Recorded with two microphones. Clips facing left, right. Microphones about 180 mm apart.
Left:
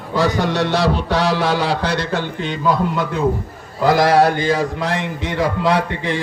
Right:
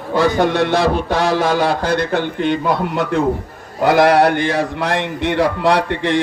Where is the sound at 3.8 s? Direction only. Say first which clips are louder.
Right 2 dB; 60° right (ahead or behind).